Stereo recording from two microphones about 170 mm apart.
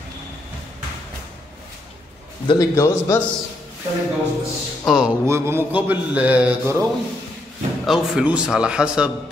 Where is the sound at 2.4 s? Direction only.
20° left (ahead or behind).